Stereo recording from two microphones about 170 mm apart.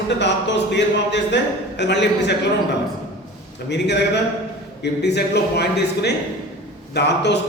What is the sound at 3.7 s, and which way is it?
A man's voice, 85° left.